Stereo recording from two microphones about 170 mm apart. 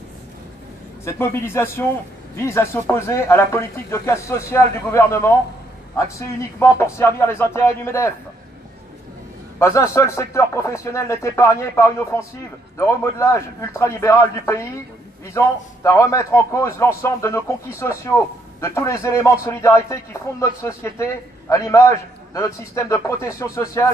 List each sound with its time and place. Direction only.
1.0 s a man's voice: 15° left (ahead or behind)
9.6 s a man's voice: 15° left (ahead or behind)